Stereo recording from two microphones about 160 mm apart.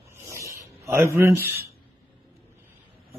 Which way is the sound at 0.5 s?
15° right (ahead or behind).